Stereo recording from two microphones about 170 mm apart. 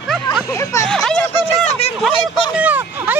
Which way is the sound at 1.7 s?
40° left (ahead or behind).